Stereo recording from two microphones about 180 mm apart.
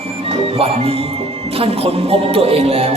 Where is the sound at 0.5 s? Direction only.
30° right (ahead or behind).